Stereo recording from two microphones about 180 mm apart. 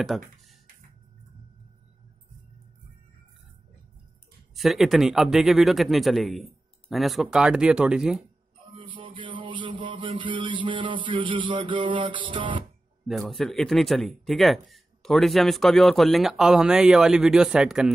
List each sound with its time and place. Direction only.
0.0 s speech: centre (ahead or behind)
4.6 s speech: centre (ahead or behind)
8.7 s mantra: 30° right (ahead or behind)
13.0 s speech: centre (ahead or behind)